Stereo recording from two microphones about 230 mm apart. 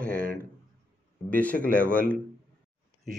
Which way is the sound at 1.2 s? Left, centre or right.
Centre.